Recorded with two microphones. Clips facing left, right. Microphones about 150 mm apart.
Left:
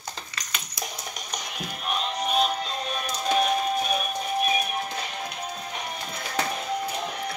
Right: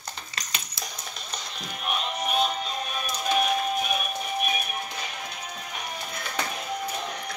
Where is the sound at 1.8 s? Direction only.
5° right (ahead or behind).